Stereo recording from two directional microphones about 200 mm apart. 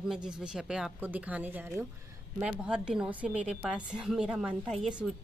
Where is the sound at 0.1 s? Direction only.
5° right (ahead or behind).